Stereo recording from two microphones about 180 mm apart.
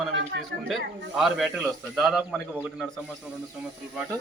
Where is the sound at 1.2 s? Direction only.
Centre (ahead or behind).